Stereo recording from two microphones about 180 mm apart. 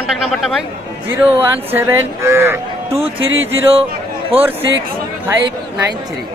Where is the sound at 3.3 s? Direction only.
90° right.